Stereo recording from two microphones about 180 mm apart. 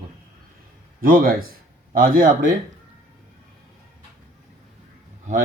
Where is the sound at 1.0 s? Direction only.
55° right (ahead or behind).